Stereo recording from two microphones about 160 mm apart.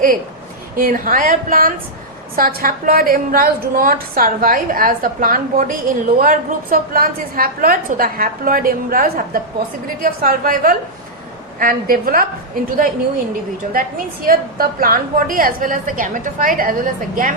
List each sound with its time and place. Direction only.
0.8 s a woman's voice: 60° right (ahead or behind)